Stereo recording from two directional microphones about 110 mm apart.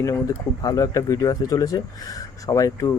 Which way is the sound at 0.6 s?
35° left (ahead or behind).